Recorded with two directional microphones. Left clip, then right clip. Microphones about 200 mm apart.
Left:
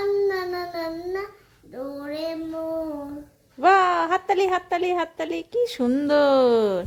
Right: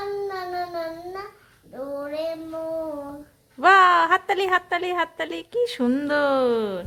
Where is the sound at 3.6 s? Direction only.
5° left (ahead or behind).